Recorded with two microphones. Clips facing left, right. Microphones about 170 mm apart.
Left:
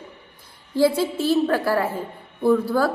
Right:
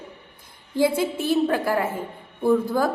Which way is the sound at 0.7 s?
15° right (ahead or behind).